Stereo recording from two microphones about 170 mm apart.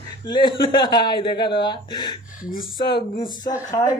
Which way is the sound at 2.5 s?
55° left (ahead or behind).